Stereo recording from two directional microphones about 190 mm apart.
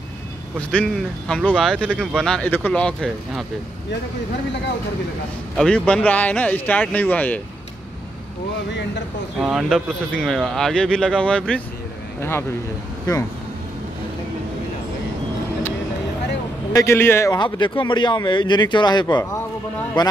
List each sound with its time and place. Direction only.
0.6 s speech: 5° left (ahead or behind)
5.6 s speech: 5° left (ahead or behind)
9.4 s speech: centre (ahead or behind)
16.7 s a man's voice: 15° left (ahead or behind)